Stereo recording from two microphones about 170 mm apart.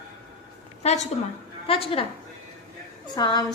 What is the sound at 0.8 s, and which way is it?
A woman's voice, 40° left (ahead or behind).